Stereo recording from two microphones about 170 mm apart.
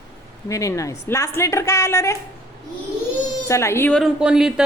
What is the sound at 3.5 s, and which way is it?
Speech, 15° left (ahead or behind).